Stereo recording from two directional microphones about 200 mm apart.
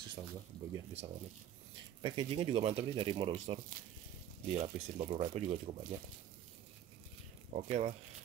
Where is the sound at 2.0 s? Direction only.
25° right (ahead or behind).